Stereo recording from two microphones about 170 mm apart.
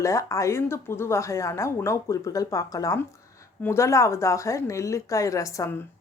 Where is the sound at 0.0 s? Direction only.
20° left (ahead or behind).